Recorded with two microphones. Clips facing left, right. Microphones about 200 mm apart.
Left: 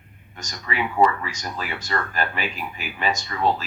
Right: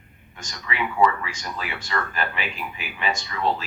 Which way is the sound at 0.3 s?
40° left (ahead or behind).